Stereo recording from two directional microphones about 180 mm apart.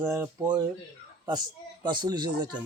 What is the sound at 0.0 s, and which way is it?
Speech, 15° right (ahead or behind).